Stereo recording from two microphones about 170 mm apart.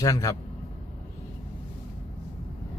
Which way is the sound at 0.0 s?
20° left (ahead or behind).